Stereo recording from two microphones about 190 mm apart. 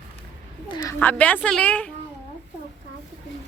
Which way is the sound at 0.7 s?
20° left (ahead or behind).